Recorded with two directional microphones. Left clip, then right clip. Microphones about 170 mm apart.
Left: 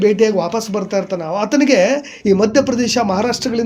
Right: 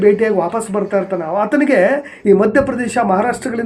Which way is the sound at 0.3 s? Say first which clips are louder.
Right 1 dB; 40° left (ahead or behind).